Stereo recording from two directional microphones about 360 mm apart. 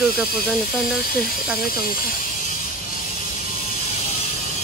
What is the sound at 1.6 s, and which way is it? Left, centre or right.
Speech, left.